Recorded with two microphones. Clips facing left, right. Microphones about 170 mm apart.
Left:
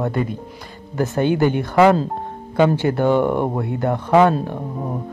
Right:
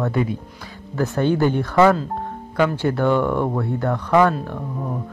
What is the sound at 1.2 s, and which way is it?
Speech, 65° left (ahead or behind).